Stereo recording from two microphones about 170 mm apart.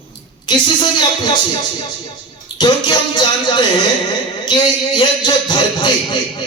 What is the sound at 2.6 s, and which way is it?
A man's voice, 25° left (ahead or behind).